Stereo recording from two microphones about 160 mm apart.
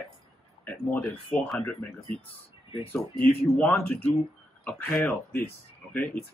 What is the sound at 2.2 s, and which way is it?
Speech, 40° left (ahead or behind).